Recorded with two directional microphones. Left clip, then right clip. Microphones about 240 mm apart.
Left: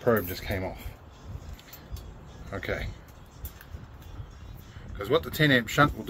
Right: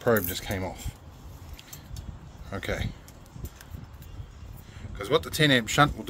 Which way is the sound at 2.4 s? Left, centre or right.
Right.